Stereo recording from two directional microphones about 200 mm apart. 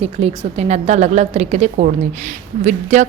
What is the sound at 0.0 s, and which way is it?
A woman's voice, 30° right (ahead or behind).